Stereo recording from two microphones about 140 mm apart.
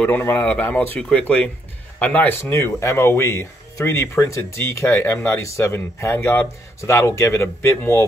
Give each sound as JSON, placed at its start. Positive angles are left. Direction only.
{"t": 0.0, "sound": "speech", "side_deg": 15}